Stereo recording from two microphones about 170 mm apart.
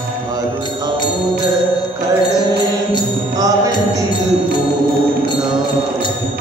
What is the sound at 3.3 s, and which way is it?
Music, 20° right (ahead or behind).